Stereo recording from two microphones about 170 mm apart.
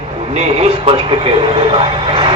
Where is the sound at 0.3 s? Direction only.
40° right (ahead or behind).